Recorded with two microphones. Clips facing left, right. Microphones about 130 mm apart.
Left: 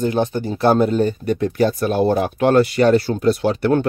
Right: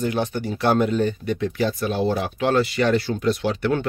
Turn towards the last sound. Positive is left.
turn(degrees=45)  # may be behind; listen again after turning